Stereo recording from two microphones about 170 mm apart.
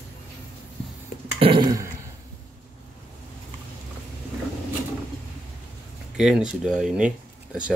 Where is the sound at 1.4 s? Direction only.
30° right (ahead or behind).